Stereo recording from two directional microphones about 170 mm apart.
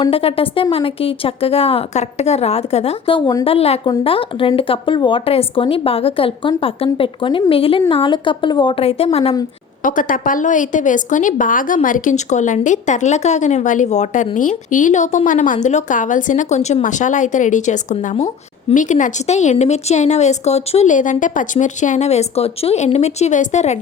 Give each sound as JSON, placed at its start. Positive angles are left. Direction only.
{"t": 0.0, "sound": "speech", "side_deg": 35}
{"t": 9.8, "sound": "a woman's voice", "side_deg": 50}